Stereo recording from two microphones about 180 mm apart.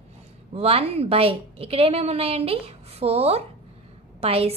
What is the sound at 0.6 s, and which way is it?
A woman's voice, 35° right (ahead or behind).